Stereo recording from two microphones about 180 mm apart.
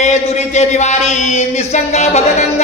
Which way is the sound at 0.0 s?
40° left (ahead or behind).